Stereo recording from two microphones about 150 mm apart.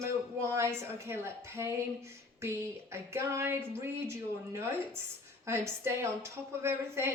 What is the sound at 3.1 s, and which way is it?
Speech, 15° right (ahead or behind).